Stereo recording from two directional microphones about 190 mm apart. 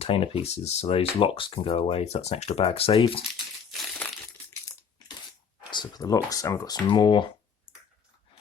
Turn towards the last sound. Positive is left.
turn(degrees=25)  # may be behind; listen again after turning